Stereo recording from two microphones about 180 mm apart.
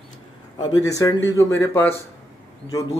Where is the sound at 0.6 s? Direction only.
20° left (ahead or behind).